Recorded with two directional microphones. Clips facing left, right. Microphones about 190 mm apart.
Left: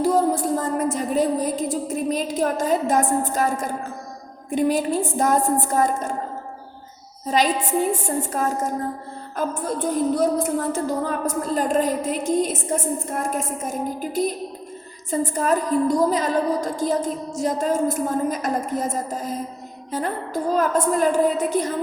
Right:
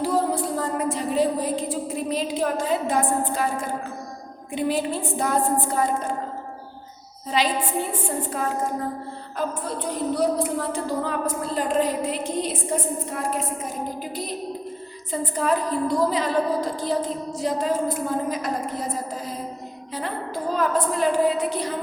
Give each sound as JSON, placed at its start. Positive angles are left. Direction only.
{"t": 0.0, "sound": "music", "side_deg": 45}
{"t": 4.5, "sound": "a woman's voice", "side_deg": 45}
{"t": 7.3, "sound": "a woman's voice", "side_deg": 45}